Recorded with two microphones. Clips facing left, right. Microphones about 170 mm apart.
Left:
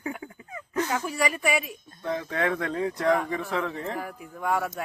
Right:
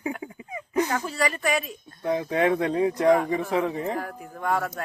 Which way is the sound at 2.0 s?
15° right (ahead or behind).